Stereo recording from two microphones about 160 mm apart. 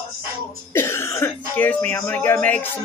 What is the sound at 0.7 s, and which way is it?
Cough, 15° left (ahead or behind).